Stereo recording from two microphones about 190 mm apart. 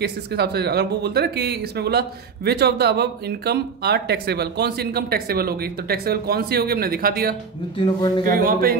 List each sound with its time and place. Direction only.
0.0 s speech: 60° right (ahead or behind)
7.7 s speech: 25° left (ahead or behind)
8.3 s a sound: 50° right (ahead or behind)